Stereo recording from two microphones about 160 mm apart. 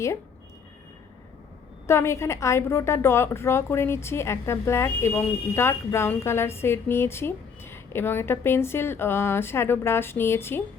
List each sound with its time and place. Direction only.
1.9 s a woman's voice: 15° left (ahead or behind)